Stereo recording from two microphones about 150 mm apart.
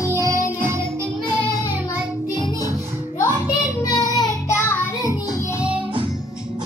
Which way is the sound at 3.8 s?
25° left (ahead or behind).